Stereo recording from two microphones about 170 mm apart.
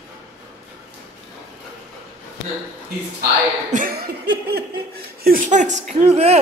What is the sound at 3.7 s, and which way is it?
Laughter, 55° right (ahead or behind).